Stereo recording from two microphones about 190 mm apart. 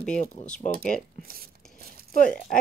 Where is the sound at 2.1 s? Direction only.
45° left (ahead or behind).